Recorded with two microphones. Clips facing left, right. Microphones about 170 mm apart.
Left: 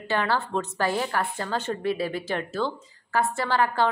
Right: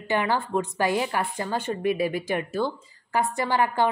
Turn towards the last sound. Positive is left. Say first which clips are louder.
# right 1 dB
turn(degrees=-15)  # may be behind; listen again after turning